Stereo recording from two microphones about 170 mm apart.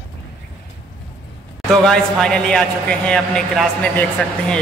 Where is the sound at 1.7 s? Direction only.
5° left (ahead or behind).